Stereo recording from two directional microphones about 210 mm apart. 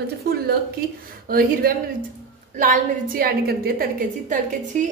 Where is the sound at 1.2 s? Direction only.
45° right (ahead or behind).